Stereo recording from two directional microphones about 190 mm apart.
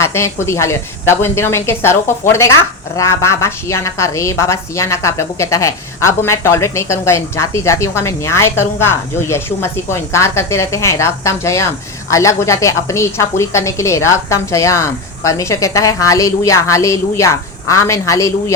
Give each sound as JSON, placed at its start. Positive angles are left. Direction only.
{"t": 0.0, "sound": "a woman's voice", "side_deg": 15}